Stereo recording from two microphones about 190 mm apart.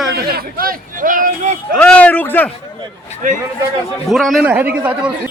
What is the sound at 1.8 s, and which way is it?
Speech, 5° left (ahead or behind).